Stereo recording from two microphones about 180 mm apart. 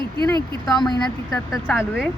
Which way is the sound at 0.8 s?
20° left (ahead or behind).